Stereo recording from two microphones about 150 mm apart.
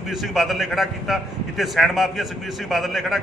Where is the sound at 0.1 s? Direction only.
Centre (ahead or behind).